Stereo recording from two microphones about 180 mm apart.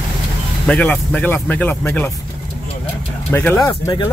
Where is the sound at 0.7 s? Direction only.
5° left (ahead or behind).